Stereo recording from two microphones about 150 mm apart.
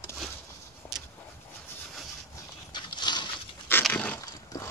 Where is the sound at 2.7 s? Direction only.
30° left (ahead or behind).